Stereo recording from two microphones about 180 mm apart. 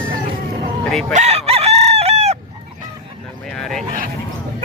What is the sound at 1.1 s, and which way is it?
Chicken, 40° right (ahead or behind).